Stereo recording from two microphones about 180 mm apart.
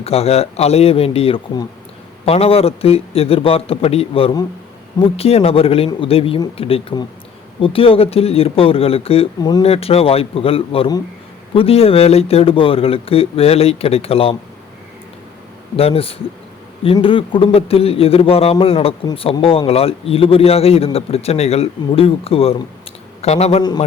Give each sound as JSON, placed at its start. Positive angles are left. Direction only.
{"t": 0.0, "sound": "speech", "side_deg": 35}
{"t": 9.6, "sound": "speech", "side_deg": 35}
{"t": 15.7, "sound": "speech", "side_deg": 30}